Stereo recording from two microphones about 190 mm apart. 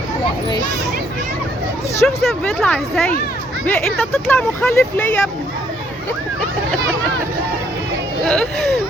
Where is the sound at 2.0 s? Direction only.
Centre (ahead or behind).